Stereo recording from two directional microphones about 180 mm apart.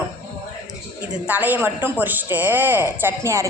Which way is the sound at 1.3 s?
10° right (ahead or behind).